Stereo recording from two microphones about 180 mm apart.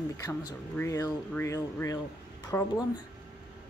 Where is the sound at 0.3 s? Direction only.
15° left (ahead or behind).